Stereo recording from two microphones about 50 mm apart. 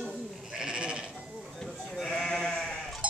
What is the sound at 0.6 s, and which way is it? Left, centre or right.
Sheep, centre.